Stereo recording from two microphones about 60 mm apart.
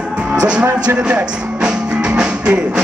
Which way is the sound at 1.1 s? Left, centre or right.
Centre.